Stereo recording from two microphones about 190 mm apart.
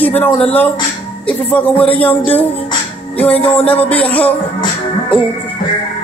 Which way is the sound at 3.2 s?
30° left (ahead or behind).